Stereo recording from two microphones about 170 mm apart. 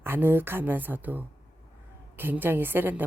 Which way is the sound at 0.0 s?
15° right (ahead or behind).